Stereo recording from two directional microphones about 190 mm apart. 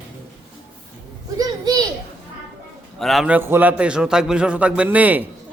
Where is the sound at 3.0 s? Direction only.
Centre (ahead or behind).